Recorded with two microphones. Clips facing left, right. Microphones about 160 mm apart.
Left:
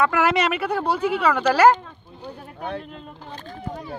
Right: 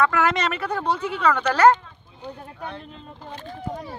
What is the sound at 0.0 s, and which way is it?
Speech, 10° left (ahead or behind).